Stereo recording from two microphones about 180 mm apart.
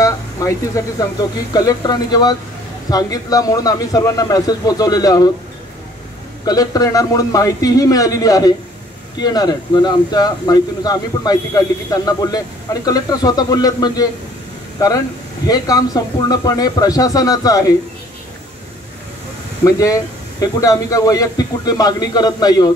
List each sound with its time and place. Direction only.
0.0 s a sound: 20° left (ahead or behind)
1.5 s speech: 20° left (ahead or behind)
6.4 s speech: 20° left (ahead or behind)
19.6 s speech: 20° left (ahead or behind)